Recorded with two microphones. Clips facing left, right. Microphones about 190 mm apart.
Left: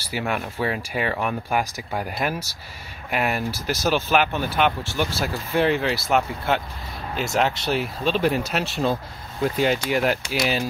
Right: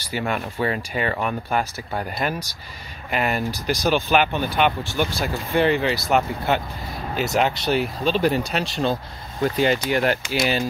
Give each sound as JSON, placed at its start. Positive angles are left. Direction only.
{"t": 0.1, "sound": "speech", "side_deg": 5}